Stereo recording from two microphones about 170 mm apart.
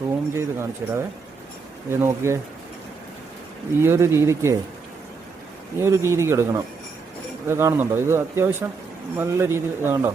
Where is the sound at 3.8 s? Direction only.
15° right (ahead or behind).